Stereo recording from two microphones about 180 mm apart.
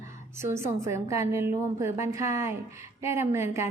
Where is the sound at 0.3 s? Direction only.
15° right (ahead or behind).